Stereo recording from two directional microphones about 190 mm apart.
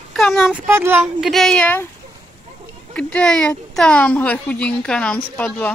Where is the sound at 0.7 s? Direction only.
10° right (ahead or behind).